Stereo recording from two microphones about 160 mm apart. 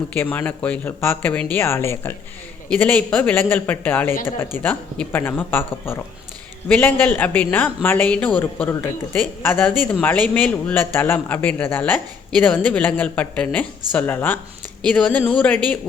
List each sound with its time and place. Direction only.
0.1 s speech: 10° left (ahead or behind)